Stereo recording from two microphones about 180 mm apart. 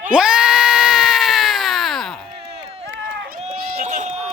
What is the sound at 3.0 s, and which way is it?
Run, 75° right (ahead or behind).